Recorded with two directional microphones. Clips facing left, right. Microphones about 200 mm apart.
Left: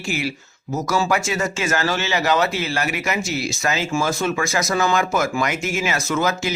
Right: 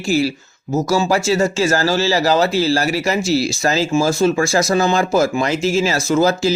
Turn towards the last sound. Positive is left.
turn(degrees=-30)  # may be behind; listen again after turning